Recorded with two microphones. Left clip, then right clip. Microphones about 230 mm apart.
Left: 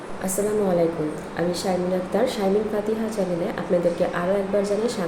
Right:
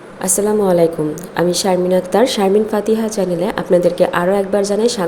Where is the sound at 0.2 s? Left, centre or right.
Right.